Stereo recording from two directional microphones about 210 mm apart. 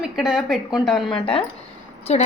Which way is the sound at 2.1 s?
30° left (ahead or behind).